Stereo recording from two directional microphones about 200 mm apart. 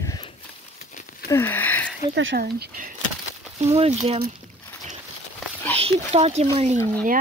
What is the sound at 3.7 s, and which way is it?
Speech, 30° right (ahead or behind).